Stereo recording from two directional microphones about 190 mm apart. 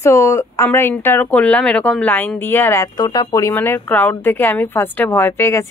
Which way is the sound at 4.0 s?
10° left (ahead or behind).